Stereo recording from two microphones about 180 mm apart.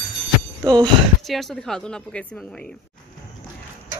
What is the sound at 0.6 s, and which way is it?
Speech, 25° right (ahead or behind).